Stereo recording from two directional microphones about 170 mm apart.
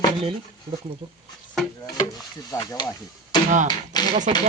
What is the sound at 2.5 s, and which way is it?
Speech, 25° left (ahead or behind).